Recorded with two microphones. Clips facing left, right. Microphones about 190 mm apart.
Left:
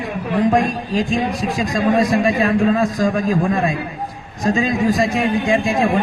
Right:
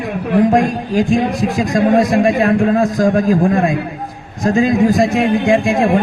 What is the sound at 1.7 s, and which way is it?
A man's voice, 50° right (ahead or behind).